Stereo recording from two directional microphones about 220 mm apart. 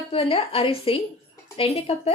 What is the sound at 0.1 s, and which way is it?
A woman's voice, 25° left (ahead or behind).